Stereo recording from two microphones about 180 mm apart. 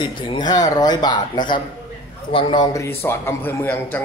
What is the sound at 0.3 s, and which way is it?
Speech, 25° left (ahead or behind).